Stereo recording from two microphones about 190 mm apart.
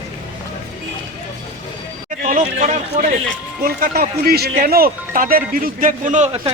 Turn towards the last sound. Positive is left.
turn(degrees=-35)  # may be behind; listen again after turning